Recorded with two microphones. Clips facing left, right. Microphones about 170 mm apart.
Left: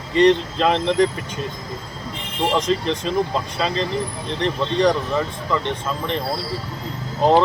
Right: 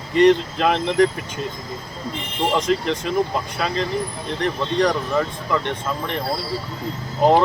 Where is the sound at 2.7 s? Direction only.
20° left (ahead or behind).